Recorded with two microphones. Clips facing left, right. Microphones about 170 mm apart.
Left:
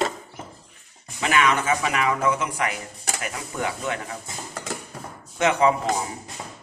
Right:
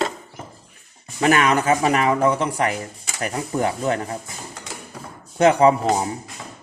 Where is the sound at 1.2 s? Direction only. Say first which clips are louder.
Right 4 dB; 40° right (ahead or behind).